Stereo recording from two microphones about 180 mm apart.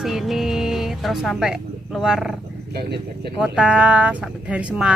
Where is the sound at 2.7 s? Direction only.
65° right (ahead or behind).